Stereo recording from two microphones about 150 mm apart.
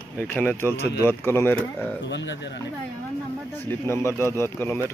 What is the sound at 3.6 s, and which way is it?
Speech, 15° left (ahead or behind).